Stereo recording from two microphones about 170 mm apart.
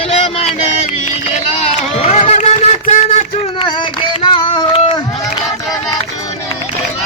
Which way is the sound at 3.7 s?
30° left (ahead or behind).